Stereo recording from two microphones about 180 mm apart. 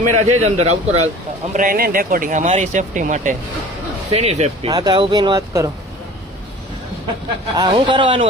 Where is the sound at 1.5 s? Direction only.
50° right (ahead or behind); by 4.7 s 35° right (ahead or behind).